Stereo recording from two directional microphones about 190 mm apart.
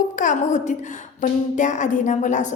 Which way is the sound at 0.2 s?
40° left (ahead or behind).